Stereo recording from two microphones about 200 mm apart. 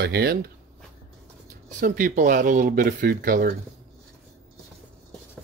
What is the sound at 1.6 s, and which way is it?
Speech, 40° right (ahead or behind).